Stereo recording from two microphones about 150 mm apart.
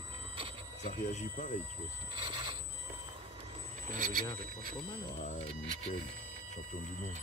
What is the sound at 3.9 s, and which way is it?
Speech, 65° right (ahead or behind).